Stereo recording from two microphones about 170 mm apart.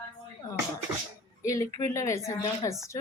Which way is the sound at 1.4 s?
20° left (ahead or behind).